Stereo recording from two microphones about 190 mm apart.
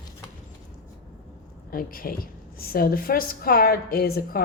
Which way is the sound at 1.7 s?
50° left (ahead or behind).